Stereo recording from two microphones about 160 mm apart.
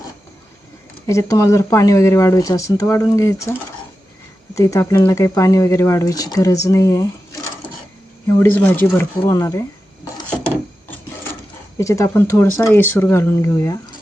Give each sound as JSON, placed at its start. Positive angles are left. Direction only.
{"t": 1.0, "sound": "speech", "side_deg": 20}
{"t": 11.8, "sound": "speech", "side_deg": 20}